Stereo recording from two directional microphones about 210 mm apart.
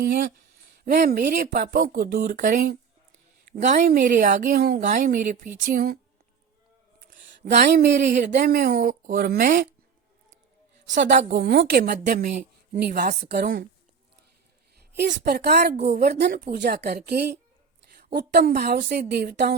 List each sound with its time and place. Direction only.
0.0 s a woman's voice: 40° right (ahead or behind)
7.4 s a woman's voice: 50° right (ahead or behind)
11.3 s a woman's voice: 50° right (ahead or behind)
14.9 s a woman's voice: 55° right (ahead or behind)